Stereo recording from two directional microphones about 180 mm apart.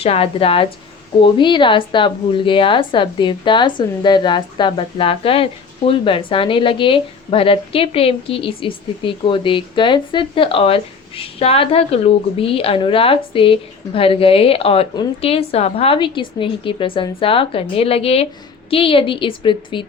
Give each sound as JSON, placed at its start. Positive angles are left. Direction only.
{"t": 0.0, "sound": "a woman's voice", "side_deg": 35}